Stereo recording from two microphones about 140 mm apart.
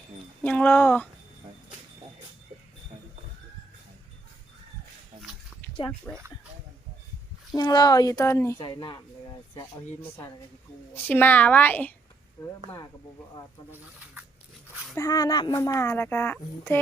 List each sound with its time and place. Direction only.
0.4 s speech: 10° left (ahead or behind)
5.6 s dog: 15° left (ahead or behind)
6.1 s a woman's voice: 10° left (ahead or behind)
7.5 s speech: 30° left (ahead or behind)
8.5 s speech: 35° left (ahead or behind)
10.9 s a woman's voice: 15° left (ahead or behind)
13.7 s speech: 15° right (ahead or behind)
14.9 s speech: 25° left (ahead or behind)